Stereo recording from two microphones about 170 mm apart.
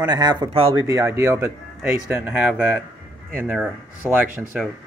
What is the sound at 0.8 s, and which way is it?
Speech, 20° right (ahead or behind).